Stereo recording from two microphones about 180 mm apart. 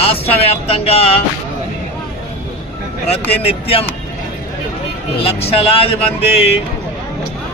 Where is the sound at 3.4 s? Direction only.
35° left (ahead or behind).